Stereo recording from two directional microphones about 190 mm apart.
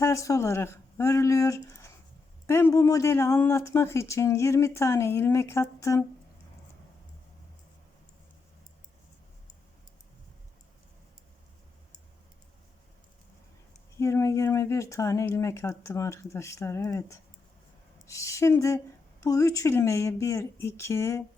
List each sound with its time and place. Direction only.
0.0 s speech: 15° left (ahead or behind)
14.0 s speech: 15° left (ahead or behind)